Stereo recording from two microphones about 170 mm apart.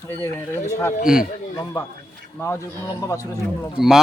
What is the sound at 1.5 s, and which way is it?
Speech, 20° left (ahead or behind).